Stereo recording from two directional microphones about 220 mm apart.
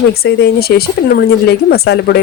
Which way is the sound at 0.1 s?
45° left (ahead or behind).